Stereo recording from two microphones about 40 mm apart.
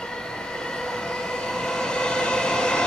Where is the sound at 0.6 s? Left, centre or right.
Centre.